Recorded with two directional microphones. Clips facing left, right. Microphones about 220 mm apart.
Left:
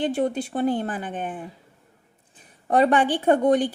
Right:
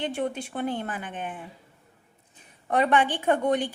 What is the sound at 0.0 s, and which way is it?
Speech, 35° left (ahead or behind).